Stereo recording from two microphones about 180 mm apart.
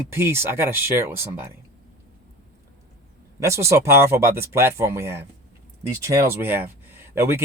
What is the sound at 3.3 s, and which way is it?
A man's voice, 15° right (ahead or behind).